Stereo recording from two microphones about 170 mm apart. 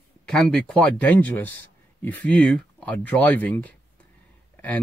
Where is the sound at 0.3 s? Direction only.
5° left (ahead or behind).